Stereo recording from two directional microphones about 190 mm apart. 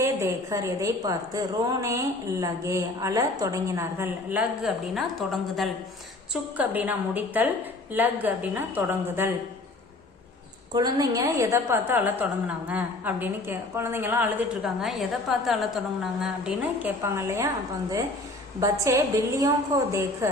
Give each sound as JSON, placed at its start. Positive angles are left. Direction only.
{"t": 0.0, "sound": "a woman's voice", "side_deg": -15}
{"t": 10.8, "sound": "a woman's voice", "side_deg": -20}
{"t": 18.6, "sound": "a woman's voice", "side_deg": -15}